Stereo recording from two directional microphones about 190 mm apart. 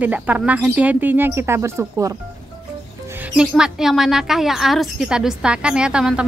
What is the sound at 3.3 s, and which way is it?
A woman's voice, 5° right (ahead or behind).